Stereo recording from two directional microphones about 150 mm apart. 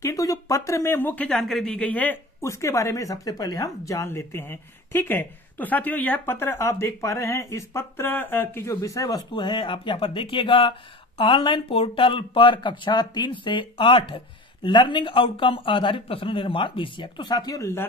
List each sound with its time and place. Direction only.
0.0 s speech: 20° left (ahead or behind)
2.4 s speech: 20° left (ahead or behind)